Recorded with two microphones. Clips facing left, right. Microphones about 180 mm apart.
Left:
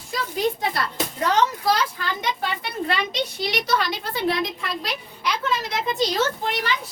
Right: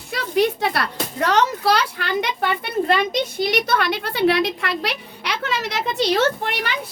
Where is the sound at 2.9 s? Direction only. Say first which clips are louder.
Right 6 dB; 50° right (ahead or behind).